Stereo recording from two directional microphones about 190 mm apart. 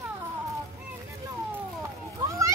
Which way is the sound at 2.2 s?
15° right (ahead or behind).